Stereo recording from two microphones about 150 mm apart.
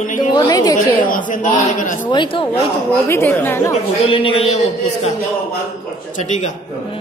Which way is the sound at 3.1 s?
15° left (ahead or behind).